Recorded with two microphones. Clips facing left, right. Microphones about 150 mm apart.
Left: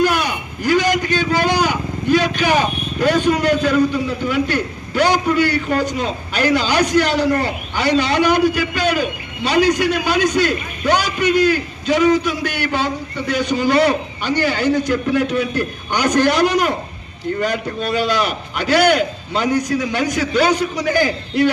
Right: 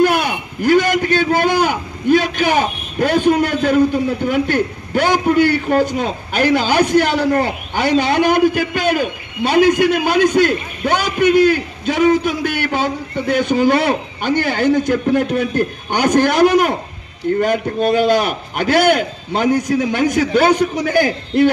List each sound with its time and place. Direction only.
0.0 s a man's voice: 50° right (ahead or behind)